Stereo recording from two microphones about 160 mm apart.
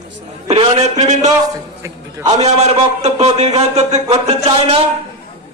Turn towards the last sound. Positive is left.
turn(degrees=-40)  # may be behind; listen again after turning